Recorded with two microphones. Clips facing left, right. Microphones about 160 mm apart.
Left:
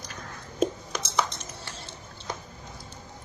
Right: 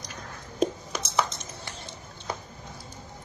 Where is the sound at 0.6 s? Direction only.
5° right (ahead or behind).